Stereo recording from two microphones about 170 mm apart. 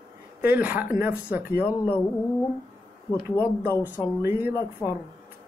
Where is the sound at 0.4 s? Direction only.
10° right (ahead or behind).